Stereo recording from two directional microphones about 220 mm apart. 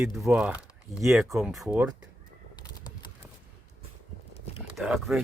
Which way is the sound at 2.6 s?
20° left (ahead or behind).